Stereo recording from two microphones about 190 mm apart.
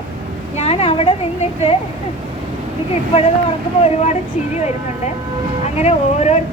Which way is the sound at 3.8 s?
35° left (ahead or behind).